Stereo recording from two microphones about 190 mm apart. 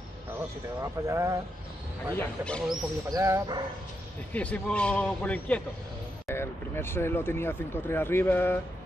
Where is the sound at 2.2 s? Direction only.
5° left (ahead or behind).